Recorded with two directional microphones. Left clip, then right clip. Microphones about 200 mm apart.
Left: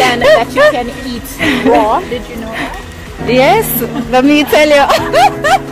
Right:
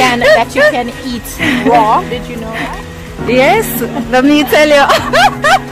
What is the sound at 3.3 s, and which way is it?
Speech, 5° right (ahead or behind).